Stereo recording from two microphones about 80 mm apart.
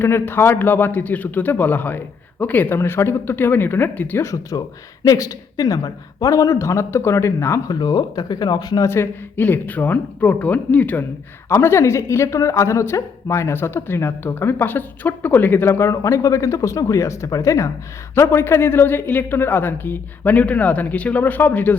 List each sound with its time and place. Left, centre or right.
0.0 s speech: left
4.2 s a man's voice: left
7.7 s speech: left
8.9 s speech: left
11.4 s speech: left